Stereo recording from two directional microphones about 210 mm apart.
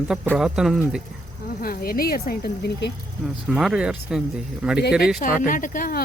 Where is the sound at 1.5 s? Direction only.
45° left (ahead or behind).